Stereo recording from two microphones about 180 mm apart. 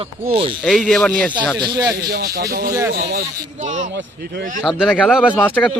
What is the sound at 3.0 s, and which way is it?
Speech, 55° right (ahead or behind).